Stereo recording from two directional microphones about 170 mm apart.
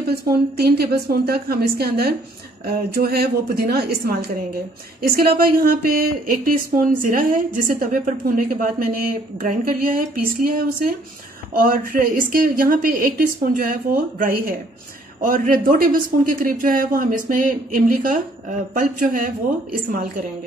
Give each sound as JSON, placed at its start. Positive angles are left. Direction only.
{"t": 0.1, "sound": "speech", "side_deg": -65}
{"t": 5.0, "sound": "a woman's voice", "side_deg": -60}